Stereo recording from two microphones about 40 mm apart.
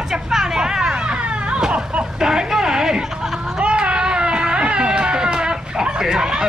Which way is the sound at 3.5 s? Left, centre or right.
Right.